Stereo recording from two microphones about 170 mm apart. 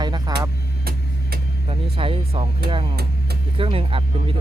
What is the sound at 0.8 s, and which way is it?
Vehicle, 65° right (ahead or behind).